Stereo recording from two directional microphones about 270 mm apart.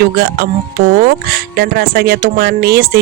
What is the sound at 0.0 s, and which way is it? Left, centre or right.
Speech, right.